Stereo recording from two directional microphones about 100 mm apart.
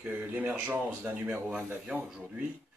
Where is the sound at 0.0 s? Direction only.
15° right (ahead or behind).